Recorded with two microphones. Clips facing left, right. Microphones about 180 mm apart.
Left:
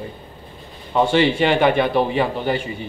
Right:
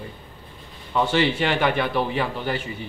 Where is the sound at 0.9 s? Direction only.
25° left (ahead or behind).